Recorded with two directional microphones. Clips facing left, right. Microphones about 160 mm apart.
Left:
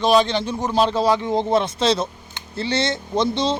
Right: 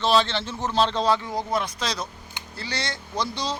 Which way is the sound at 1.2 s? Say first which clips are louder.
Left 8 dB; 25° left (ahead or behind).